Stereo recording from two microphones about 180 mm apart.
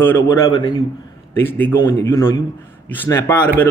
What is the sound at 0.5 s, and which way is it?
A man's voice, 25° left (ahead or behind).